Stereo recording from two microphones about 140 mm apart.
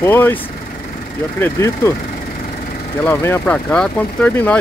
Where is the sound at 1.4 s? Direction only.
20° left (ahead or behind).